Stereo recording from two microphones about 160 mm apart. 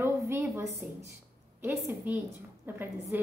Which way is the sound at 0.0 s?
15° right (ahead or behind).